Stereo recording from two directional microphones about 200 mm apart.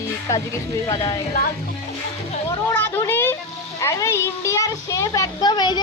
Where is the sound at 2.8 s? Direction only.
10° left (ahead or behind).